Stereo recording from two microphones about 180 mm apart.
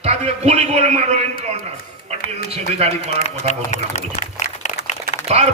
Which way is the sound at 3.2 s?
40° left (ahead or behind).